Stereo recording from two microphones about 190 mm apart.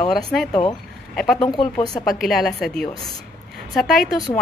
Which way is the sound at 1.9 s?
Centre (ahead or behind).